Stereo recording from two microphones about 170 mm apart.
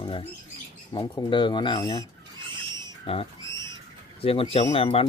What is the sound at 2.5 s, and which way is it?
Owl, 25° right (ahead or behind).